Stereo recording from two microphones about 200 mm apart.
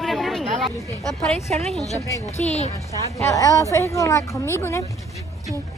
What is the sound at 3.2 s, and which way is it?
A woman's voice, 15° left (ahead or behind).